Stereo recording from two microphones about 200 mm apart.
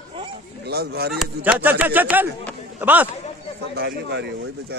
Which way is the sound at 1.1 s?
5° right (ahead or behind).